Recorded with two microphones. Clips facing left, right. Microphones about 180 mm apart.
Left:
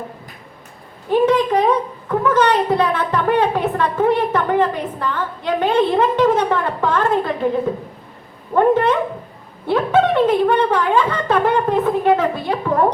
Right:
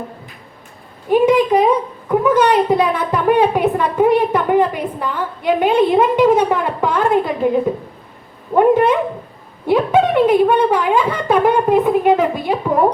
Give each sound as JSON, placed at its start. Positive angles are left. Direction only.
{"t": 1.1, "sound": "a woman's voice", "side_deg": -10}
{"t": 8.5, "sound": "a woman's voice", "side_deg": -10}